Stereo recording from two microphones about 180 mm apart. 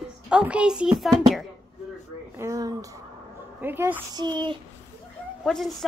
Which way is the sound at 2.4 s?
20° right (ahead or behind).